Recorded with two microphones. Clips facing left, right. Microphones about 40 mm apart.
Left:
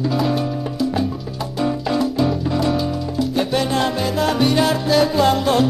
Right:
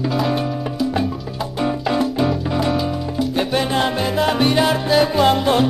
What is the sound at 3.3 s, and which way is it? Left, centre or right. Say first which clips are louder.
Salsa music: even; right.